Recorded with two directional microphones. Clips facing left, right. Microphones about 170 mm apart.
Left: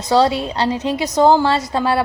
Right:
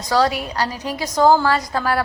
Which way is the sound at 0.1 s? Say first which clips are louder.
Left 4 dB; 25° left (ahead or behind).